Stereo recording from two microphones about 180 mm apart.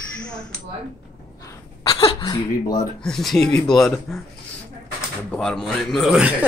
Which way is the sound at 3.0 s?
5° left (ahead or behind).